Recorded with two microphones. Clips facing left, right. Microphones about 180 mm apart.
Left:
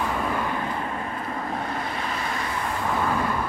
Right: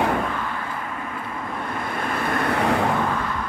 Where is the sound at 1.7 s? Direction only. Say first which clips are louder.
Right 3 dB; 50° right (ahead or behind); by 2.9 s 70° right (ahead or behind).